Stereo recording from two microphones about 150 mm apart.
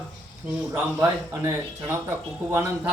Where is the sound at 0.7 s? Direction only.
15° right (ahead or behind).